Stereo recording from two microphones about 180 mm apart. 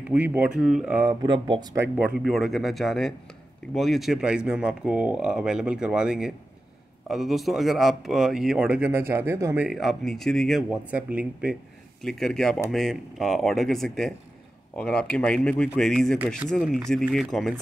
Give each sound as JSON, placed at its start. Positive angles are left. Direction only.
{"t": 0.0, "sound": "speech", "side_deg": -10}
{"t": 1.0, "sound": "speech", "side_deg": -25}
{"t": 2.0, "sound": "speech", "side_deg": -5}
{"t": 9.7, "sound": "speech", "side_deg": 0}